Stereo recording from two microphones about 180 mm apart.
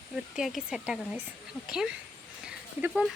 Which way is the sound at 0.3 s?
Centre (ahead or behind).